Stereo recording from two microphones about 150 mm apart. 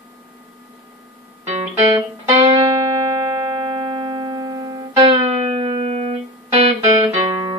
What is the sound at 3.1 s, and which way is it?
Music, 25° right (ahead or behind).